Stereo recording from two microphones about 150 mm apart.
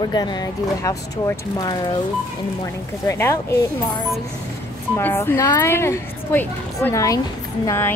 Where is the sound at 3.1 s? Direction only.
20° left (ahead or behind).